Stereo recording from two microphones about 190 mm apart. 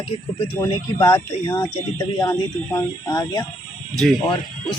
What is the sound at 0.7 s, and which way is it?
Speech, 25° left (ahead or behind).